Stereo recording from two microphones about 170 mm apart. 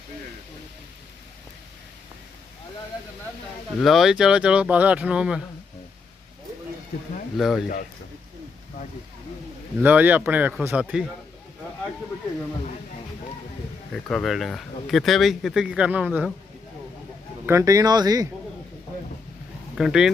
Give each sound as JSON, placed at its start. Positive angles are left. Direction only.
{"t": 3.8, "sound": "speech", "side_deg": 0}
{"t": 7.3, "sound": "speech", "side_deg": 0}
{"t": 9.8, "sound": "speech", "side_deg": -10}
{"t": 13.9, "sound": "speech", "side_deg": 0}
{"t": 17.4, "sound": "speech", "side_deg": -15}
{"t": 19.7, "sound": "speech", "side_deg": 0}